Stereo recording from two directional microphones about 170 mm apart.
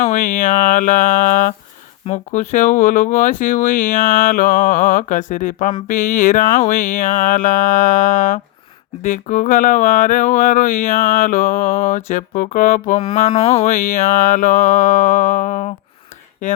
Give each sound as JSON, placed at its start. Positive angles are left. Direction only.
{"t": 0.0, "sound": "speech", "side_deg": 50}
{"t": 13.0, "sound": "speech", "side_deg": 35}